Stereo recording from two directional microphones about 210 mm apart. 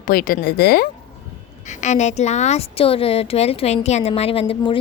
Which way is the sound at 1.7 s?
35° left (ahead or behind).